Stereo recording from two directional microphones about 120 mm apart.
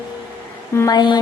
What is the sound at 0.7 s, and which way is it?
Music, 35° left (ahead or behind).